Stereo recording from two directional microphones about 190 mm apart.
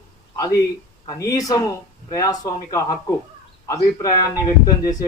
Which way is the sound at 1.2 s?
15° left (ahead or behind).